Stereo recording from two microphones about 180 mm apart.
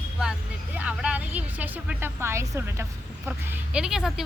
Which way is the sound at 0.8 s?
5° right (ahead or behind).